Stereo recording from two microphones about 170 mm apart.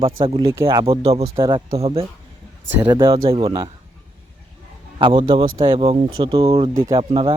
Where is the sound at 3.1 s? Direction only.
35° right (ahead or behind).